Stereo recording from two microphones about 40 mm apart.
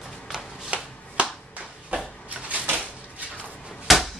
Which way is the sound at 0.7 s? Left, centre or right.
Right.